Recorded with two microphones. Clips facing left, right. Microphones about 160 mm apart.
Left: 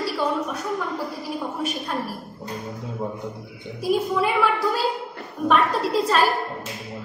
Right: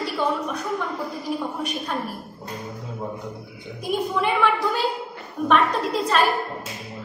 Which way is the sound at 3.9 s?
5° left (ahead or behind).